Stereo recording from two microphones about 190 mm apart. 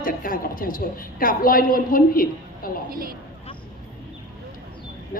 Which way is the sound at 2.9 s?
50° right (ahead or behind).